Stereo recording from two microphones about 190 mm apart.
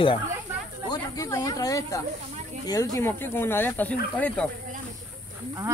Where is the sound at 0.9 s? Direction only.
20° left (ahead or behind).